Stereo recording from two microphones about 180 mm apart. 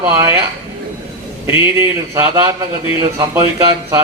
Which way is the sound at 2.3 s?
20° right (ahead or behind).